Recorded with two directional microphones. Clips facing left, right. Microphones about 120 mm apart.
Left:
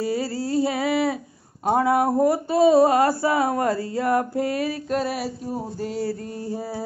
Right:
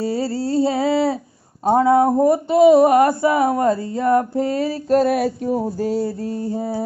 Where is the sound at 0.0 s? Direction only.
30° right (ahead or behind); by 5.7 s 60° right (ahead or behind).